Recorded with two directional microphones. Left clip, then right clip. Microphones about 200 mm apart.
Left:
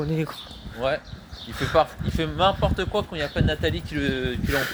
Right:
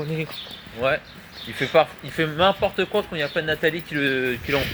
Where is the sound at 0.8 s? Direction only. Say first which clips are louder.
Right 3 dB; 25° right (ahead or behind).